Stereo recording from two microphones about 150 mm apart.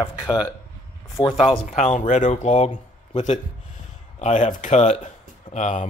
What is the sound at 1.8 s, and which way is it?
Speech, 55° left (ahead or behind).